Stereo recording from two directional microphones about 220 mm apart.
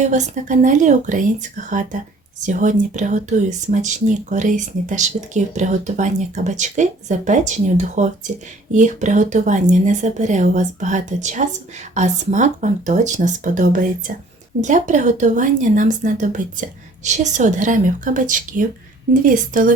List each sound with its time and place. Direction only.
0.0 s speech: 35° right (ahead or behind)